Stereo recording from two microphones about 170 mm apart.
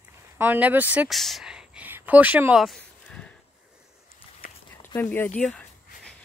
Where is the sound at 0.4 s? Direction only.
10° right (ahead or behind); by 3.3 s 5° left (ahead or behind).